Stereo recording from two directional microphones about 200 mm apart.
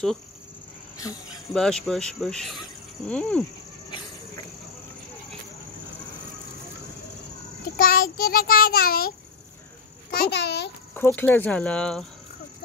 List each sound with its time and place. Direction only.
0.9 s cricket: 15° left (ahead or behind)
1.5 s speech: 5° left (ahead or behind)
7.7 s child singing: 45° left (ahead or behind)
10.1 s a child's voice: 55° left (ahead or behind)
11.0 s speech: 10° left (ahead or behind)